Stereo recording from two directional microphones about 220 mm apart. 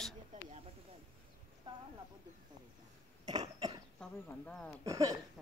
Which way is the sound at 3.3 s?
20° right (ahead or behind).